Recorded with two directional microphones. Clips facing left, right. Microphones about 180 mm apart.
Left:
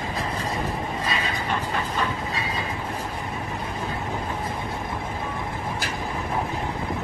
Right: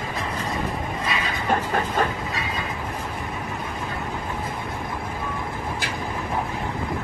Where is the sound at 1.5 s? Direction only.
45° right (ahead or behind).